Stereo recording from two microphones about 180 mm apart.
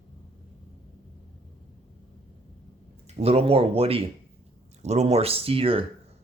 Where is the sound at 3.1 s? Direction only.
35° right (ahead or behind).